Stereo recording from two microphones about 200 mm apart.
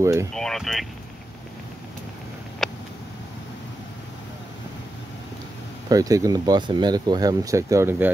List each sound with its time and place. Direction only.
0.0 s speech: 15° right (ahead or behind)
0.3 s speech: centre (ahead or behind)
2.6 s a sound: centre (ahead or behind)
5.9 s speech: 15° right (ahead or behind)